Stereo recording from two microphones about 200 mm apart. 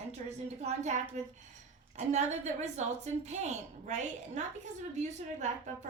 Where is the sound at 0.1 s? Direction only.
35° right (ahead or behind).